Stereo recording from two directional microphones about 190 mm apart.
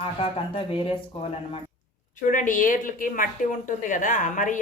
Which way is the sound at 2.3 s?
45° left (ahead or behind).